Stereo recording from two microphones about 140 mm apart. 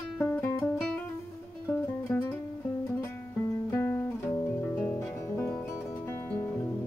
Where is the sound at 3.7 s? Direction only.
20° left (ahead or behind).